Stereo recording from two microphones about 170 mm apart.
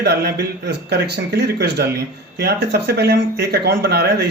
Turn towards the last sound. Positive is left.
turn(degrees=-75)  # may be behind; listen again after turning